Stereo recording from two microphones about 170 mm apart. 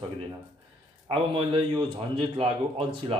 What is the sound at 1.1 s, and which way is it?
Speech, 30° right (ahead or behind).